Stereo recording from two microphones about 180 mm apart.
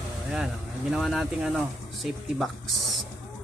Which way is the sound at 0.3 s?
Centre (ahead or behind).